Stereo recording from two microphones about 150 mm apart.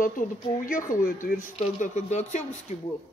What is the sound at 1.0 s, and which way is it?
Speech, 70° left (ahead or behind).